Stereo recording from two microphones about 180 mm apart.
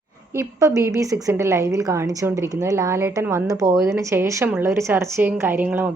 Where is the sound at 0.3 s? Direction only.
15° right (ahead or behind).